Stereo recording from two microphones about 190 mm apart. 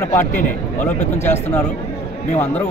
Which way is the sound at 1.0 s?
40° left (ahead or behind).